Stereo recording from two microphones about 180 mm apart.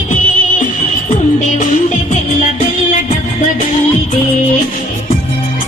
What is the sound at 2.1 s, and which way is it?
Music, 45° left (ahead or behind).